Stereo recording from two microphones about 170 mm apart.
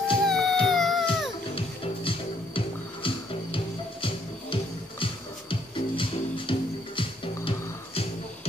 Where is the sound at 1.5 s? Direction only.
30° left (ahead or behind).